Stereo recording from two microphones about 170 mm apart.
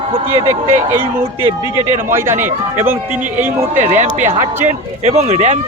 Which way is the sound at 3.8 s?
45° right (ahead or behind).